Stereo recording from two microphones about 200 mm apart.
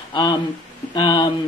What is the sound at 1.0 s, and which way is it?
Speech, 25° left (ahead or behind).